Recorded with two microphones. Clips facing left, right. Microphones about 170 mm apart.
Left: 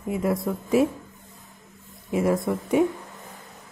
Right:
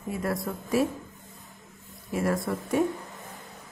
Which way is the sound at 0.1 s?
20° left (ahead or behind).